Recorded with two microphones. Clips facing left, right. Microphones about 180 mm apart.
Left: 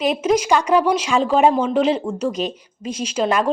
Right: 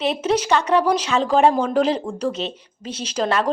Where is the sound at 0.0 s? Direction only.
10° left (ahead or behind).